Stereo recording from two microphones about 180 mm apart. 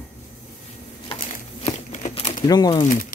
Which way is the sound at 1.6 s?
40° left (ahead or behind).